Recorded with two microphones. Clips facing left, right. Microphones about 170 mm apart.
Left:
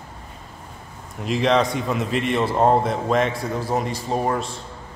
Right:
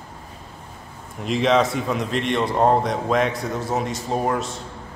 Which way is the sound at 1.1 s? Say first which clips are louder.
Right 1 dB; centre (ahead or behind).